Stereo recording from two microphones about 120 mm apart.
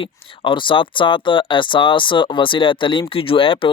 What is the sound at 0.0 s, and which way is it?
Speech, 45° left (ahead or behind).